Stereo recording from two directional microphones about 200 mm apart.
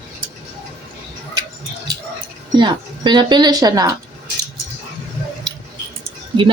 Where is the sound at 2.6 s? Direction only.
20° right (ahead or behind).